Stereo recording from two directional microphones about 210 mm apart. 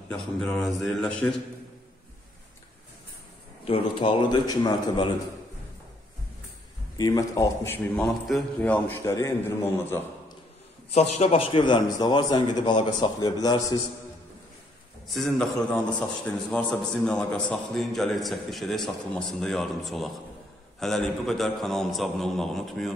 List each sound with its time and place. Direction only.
0.1 s a man's voice: 5° left (ahead or behind)
3.6 s a man's voice: 25° left (ahead or behind)
7.0 s a man's voice: 15° left (ahead or behind)
10.9 s a man's voice: 30° left (ahead or behind)
15.1 s a man's voice: centre (ahead or behind)